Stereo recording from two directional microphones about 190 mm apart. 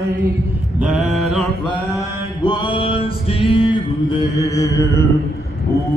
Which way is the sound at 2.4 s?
25° left (ahead or behind).